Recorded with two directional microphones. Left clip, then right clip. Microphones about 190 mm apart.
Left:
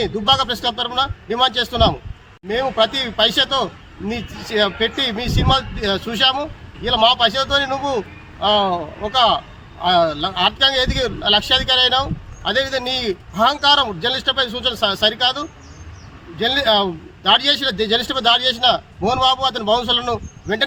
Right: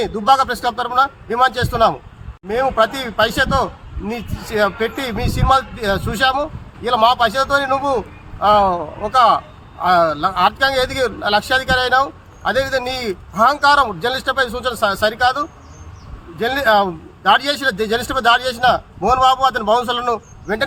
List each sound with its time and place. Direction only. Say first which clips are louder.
0.0 s speech: right 3 dB; 5° right (ahead or behind)